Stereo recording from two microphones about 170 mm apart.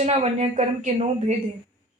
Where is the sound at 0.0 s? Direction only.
40° right (ahead or behind).